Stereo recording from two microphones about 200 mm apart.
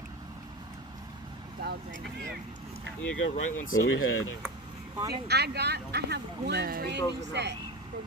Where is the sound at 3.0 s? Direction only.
10° left (ahead or behind).